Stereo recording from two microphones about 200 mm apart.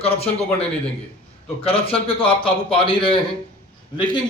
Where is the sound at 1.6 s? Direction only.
30° left (ahead or behind).